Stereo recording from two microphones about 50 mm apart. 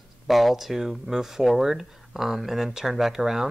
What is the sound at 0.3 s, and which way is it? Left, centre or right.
Speech, centre.